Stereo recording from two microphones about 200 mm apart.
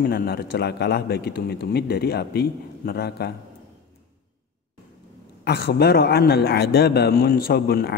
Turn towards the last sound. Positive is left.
turn(degrees=50)  # may be behind; listen again after turning